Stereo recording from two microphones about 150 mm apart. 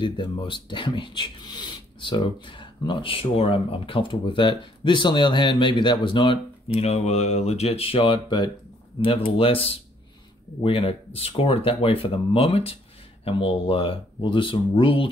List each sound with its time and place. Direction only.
0.0 s speech: 35° left (ahead or behind)